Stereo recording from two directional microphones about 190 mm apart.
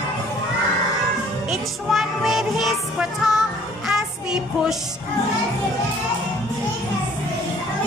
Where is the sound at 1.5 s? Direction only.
Centre (ahead or behind).